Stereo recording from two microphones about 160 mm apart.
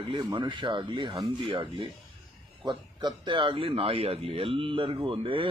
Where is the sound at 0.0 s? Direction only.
25° right (ahead or behind).